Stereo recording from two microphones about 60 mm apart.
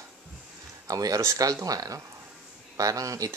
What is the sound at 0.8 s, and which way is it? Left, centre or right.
Speech, right.